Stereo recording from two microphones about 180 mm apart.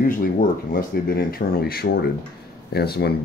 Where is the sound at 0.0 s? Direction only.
50° left (ahead or behind).